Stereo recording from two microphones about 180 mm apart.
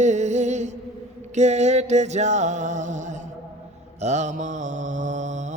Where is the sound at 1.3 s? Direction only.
40° right (ahead or behind).